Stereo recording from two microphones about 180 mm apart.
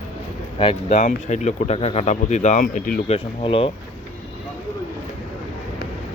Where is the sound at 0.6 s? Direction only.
35° left (ahead or behind); by 3.0 s 50° left (ahead or behind).